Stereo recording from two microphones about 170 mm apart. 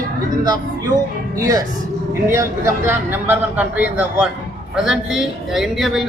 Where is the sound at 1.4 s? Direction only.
20° right (ahead or behind).